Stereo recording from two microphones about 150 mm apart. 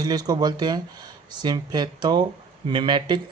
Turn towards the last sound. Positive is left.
turn(degrees=-30)  # may be behind; listen again after turning